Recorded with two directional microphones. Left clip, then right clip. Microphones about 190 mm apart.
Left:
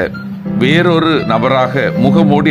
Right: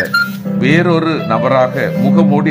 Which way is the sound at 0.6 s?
25° left (ahead or behind).